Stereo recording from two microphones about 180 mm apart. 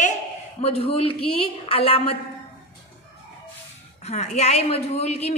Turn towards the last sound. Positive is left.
turn(degrees=35)  # may be behind; listen again after turning